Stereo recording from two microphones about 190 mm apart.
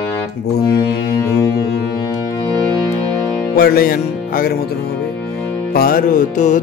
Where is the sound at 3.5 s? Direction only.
55° left (ahead or behind).